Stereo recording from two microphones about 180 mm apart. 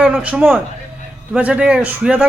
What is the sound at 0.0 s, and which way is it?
Speech, 5° right (ahead or behind).